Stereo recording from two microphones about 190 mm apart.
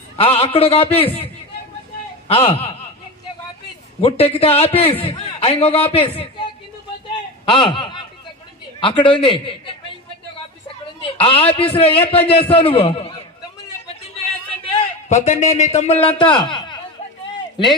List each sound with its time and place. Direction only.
0.2 s a man's voice: 30° left (ahead or behind)
4.0 s a man's voice: 30° left (ahead or behind)
7.4 s a man's voice: 25° left (ahead or behind)
11.0 s a man's voice: 30° left (ahead or behind)
14.6 s a man's voice: 30° left (ahead or behind)
16.0 s a man's voice: 25° left (ahead or behind)